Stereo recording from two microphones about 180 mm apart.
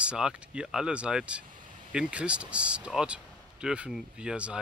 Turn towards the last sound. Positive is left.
turn(degrees=-5)  # may be behind; listen again after turning